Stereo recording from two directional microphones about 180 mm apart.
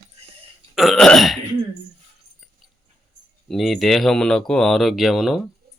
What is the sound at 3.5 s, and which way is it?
Speech, centre (ahead or behind).